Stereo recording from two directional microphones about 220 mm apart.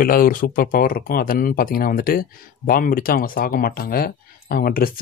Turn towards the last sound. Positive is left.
turn(degrees=40)  # may be behind; listen again after turning